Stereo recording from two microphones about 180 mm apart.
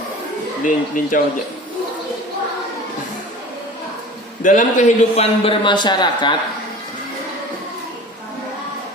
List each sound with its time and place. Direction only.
0.6 s speech: 45° left (ahead or behind)
4.4 s a man's voice: 45° left (ahead or behind); by 6.3 s 25° left (ahead or behind)